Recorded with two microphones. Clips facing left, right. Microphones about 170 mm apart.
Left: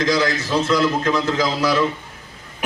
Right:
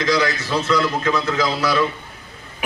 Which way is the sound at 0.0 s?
20° left (ahead or behind).